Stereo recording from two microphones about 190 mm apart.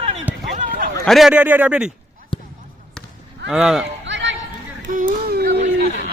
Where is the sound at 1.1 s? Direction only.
Centre (ahead or behind).